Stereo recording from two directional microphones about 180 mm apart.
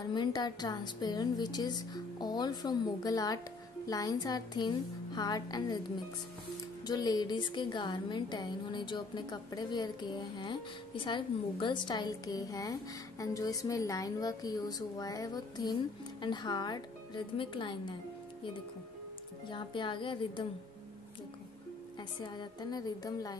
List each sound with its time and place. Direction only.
0.1 s a woman's voice: 25° left (ahead or behind)
6.9 s a woman's voice: 20° left (ahead or behind)
19.5 s a woman's voice: 25° left (ahead or behind)
22.2 s a woman's voice: 25° left (ahead or behind)